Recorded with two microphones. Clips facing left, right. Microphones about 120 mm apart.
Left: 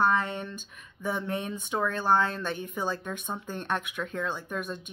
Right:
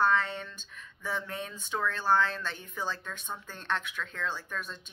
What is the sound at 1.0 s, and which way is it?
Speech, 15° left (ahead or behind).